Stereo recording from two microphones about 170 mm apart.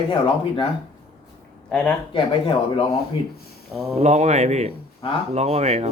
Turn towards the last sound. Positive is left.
turn(degrees=-40)  # may be behind; listen again after turning